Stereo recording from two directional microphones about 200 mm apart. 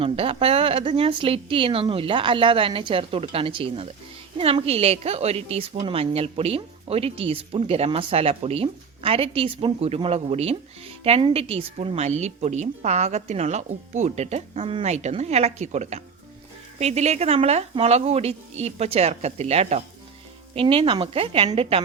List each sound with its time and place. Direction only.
0.0 s a woman's voice: 30° right (ahead or behind)